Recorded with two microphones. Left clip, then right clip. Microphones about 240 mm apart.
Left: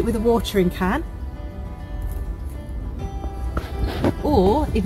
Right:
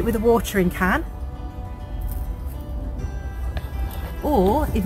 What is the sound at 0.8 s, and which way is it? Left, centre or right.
Speech, centre.